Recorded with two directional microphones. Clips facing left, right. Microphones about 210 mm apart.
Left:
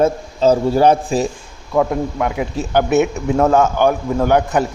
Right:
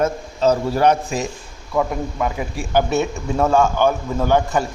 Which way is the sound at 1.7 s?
15° left (ahead or behind).